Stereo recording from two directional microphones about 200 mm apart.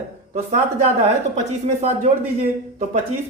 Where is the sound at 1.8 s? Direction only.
35° right (ahead or behind).